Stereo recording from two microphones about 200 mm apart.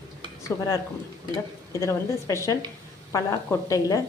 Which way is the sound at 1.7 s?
15° left (ahead or behind).